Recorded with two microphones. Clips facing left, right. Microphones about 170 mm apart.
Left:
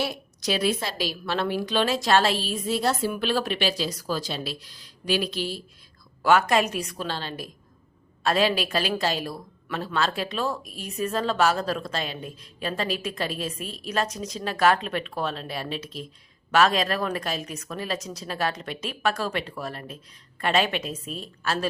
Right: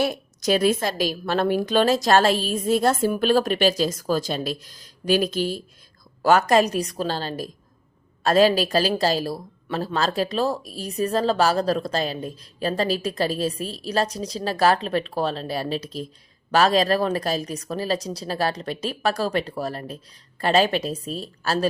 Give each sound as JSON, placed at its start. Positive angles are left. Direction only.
{"t": 0.0, "sound": "a woman's voice", "side_deg": -45}